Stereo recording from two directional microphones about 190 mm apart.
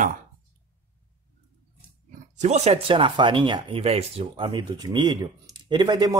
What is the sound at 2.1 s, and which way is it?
Speech, 40° right (ahead or behind).